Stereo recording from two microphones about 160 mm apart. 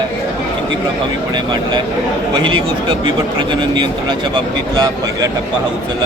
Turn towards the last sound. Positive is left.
turn(degrees=-25)  # may be behind; listen again after turning